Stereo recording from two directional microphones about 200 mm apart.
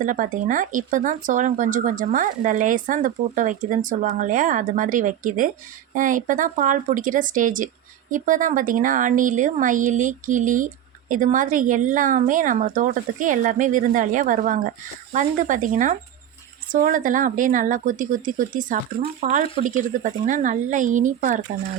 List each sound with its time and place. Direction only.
0.0 s speech: 40° right (ahead or behind)